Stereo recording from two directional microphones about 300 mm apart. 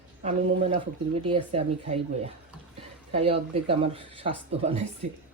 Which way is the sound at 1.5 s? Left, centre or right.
Centre.